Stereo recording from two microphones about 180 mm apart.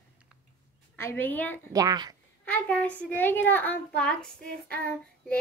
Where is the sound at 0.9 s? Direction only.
10° left (ahead or behind).